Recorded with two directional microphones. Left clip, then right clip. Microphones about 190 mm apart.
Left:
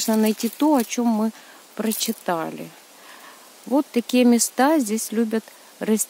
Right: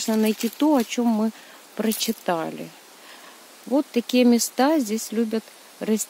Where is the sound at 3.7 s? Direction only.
10° left (ahead or behind).